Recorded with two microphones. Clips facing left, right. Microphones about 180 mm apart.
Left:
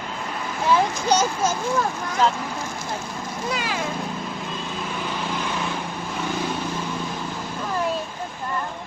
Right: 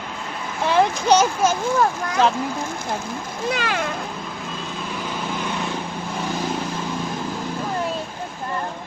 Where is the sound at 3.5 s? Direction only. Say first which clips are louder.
Right 3 dB; 65° right (ahead or behind).